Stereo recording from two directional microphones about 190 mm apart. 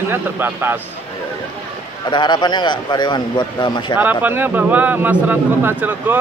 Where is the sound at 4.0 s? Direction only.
10° right (ahead or behind).